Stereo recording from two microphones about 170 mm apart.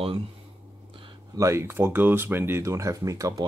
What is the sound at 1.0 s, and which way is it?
Speech, 20° right (ahead or behind).